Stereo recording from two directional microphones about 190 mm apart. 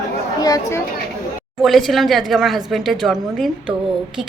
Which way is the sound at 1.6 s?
Centre (ahead or behind).